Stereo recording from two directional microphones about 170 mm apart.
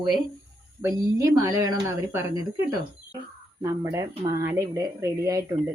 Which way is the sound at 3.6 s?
20° right (ahead or behind).